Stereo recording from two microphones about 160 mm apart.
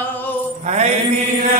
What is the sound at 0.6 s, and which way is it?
Mantra, 45° right (ahead or behind).